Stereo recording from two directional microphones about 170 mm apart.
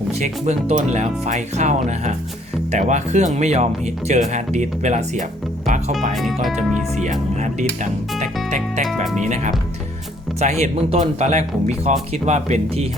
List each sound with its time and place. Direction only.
0.2 s speech: 40° right (ahead or behind)
6.1 s speech: centre (ahead or behind)
7.0 s speech: 45° right (ahead or behind)
8.4 s music: 45° right (ahead or behind)
9.2 s speech: 45° right (ahead or behind)